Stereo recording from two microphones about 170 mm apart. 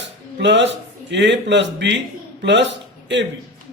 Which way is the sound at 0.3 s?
90° right.